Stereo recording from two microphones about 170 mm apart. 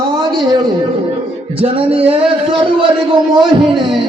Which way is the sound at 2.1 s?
30° right (ahead or behind).